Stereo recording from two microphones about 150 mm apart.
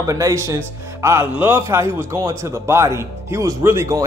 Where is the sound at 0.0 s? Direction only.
20° right (ahead or behind).